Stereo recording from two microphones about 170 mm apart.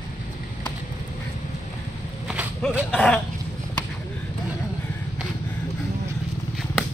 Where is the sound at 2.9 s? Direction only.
5° left (ahead or behind).